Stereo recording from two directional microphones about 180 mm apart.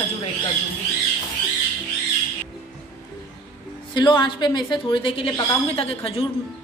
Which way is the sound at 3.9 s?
25° left (ahead or behind).